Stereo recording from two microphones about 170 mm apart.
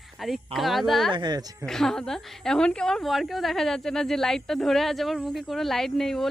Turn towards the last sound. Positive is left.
turn(degrees=0)  # may be behind; listen again after turning